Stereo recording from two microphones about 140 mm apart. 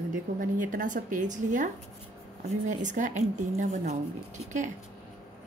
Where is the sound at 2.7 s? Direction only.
60° right (ahead or behind).